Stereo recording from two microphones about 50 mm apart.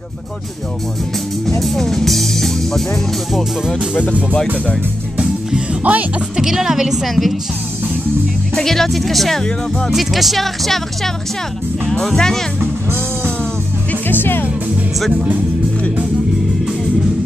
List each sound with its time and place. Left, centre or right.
1.6 s speech: centre
3.9 s speech: left
5.9 s speech: right
6.3 s a woman's voice: centre
8.5 s speech: centre
9.9 s speech: centre
11.9 s speech: centre
14.0 s music: left
15.0 s speech: centre